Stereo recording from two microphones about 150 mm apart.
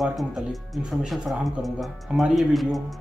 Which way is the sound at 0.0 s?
Centre (ahead or behind).